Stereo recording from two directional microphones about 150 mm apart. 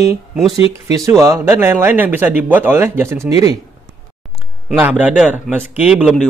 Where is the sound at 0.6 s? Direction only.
35° left (ahead or behind).